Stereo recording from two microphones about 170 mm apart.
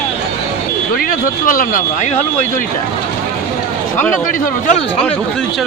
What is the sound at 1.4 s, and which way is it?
Speech, 55° left (ahead or behind).